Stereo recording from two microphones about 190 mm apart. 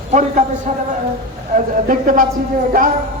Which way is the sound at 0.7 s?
40° right (ahead or behind).